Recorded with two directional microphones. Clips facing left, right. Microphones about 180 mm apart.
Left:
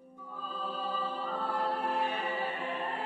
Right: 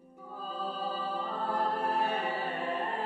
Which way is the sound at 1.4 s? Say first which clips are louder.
Right 2 dB; 40° right (ahead or behind).